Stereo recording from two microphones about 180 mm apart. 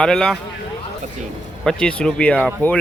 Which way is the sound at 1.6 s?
5° left (ahead or behind).